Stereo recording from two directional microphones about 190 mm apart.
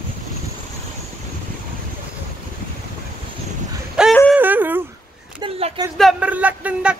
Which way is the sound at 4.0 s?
5° right (ahead or behind).